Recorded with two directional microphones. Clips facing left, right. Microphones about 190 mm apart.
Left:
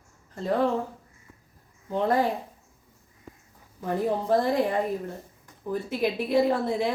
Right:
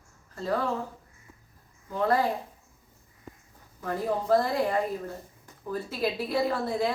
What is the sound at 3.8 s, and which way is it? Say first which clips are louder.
A woman's voice: left 3 dB; 20° left (ahead or behind).